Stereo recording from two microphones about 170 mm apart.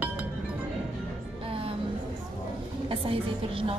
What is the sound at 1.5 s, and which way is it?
Music, 35° right (ahead or behind).